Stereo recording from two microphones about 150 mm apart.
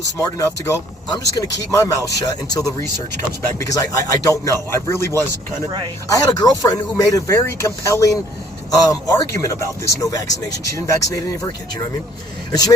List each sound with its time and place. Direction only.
0.2 s speech: 20° left (ahead or behind)